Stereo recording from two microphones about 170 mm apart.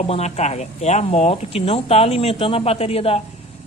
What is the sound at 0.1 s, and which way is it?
Speech, 40° left (ahead or behind).